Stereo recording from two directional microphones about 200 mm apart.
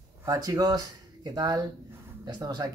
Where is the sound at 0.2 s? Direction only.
15° right (ahead or behind).